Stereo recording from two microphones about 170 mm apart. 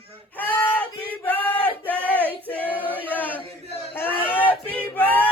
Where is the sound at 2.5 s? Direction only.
10° left (ahead or behind).